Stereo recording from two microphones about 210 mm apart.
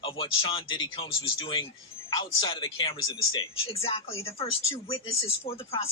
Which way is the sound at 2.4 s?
25° left (ahead or behind).